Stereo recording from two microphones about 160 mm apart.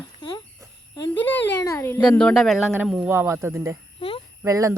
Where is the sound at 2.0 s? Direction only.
5° left (ahead or behind).